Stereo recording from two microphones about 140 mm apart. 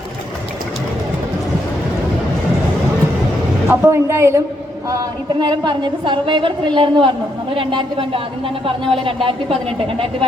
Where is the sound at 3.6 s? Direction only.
20° right (ahead or behind).